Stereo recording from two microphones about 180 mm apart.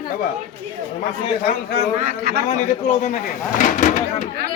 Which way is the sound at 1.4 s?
60° left (ahead or behind).